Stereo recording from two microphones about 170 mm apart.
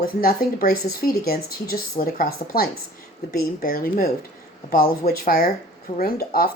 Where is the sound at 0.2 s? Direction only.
60° left (ahead or behind).